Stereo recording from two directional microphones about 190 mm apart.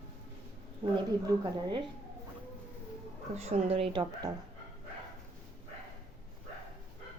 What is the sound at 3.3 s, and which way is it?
Speech, 35° right (ahead or behind).